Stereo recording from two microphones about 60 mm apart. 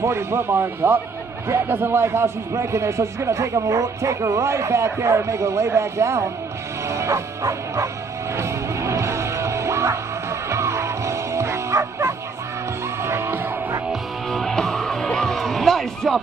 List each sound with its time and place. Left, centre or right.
0.0 s bow-wow: right
1.5 s a man's voice: right
6.9 s bow-wow: right
8.4 s music: right
14.3 s music: centre